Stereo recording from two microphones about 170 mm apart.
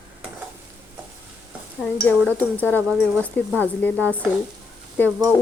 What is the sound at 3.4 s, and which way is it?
Speech, 10° left (ahead or behind).